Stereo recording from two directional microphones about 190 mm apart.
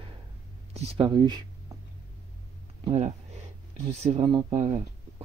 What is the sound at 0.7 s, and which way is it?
Speech, 25° right (ahead or behind).